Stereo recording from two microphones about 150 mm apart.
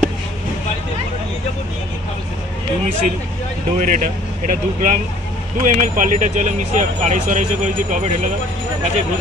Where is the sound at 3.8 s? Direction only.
60° right (ahead or behind).